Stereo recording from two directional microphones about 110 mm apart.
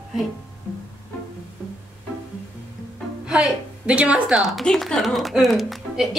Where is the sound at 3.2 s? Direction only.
5° right (ahead or behind).